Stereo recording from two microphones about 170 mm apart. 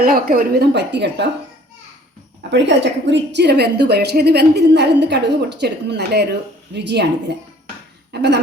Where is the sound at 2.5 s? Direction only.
90° right.